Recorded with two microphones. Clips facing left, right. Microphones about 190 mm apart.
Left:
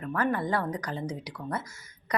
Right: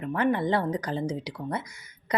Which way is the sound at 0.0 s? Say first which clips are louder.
Right 3 dB; 20° right (ahead or behind).